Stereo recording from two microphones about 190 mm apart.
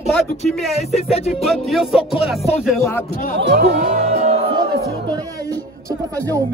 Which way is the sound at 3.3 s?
65° right (ahead or behind).